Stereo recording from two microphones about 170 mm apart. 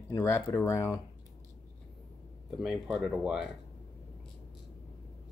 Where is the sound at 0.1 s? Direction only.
15° left (ahead or behind).